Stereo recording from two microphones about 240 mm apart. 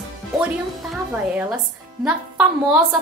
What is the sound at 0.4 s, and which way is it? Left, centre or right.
A woman's voice, centre.